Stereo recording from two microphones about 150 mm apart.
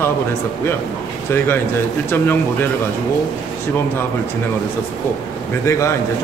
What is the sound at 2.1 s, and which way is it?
Speech, 15° left (ahead or behind).